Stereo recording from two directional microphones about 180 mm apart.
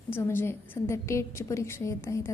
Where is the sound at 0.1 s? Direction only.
15° left (ahead or behind).